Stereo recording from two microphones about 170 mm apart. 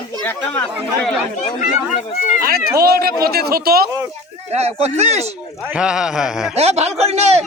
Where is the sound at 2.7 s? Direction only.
65° right (ahead or behind).